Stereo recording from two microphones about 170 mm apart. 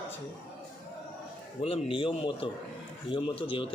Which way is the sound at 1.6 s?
35° left (ahead or behind).